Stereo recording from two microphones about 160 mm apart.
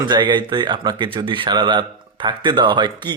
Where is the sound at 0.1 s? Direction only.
30° right (ahead or behind).